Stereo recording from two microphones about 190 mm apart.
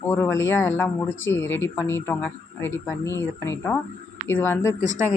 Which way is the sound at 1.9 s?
10° left (ahead or behind).